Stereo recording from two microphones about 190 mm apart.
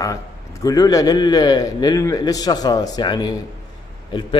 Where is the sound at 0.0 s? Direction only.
20° left (ahead or behind).